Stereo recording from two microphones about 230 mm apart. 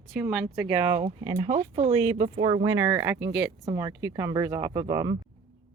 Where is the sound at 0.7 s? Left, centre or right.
Right.